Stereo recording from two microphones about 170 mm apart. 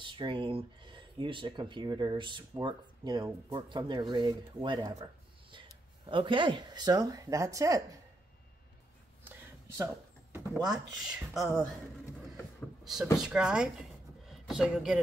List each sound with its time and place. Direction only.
0.0 s speech: 30° right (ahead or behind)
6.0 s speech: 30° right (ahead or behind)
9.2 s a sound: 10° right (ahead or behind)
10.6 s speech: centre (ahead or behind)
12.8 s speech: centre (ahead or behind)